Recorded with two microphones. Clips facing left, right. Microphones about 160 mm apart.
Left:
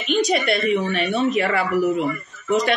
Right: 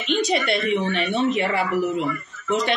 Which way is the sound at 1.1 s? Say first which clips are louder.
Left 2 dB; 25° right (ahead or behind).